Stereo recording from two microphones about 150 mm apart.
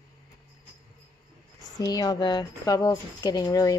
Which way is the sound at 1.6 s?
25° left (ahead or behind).